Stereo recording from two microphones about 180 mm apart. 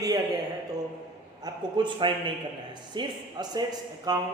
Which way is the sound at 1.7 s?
25° right (ahead or behind).